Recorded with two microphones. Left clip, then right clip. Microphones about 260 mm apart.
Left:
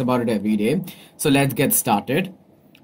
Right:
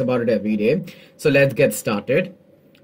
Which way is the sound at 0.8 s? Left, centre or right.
Right.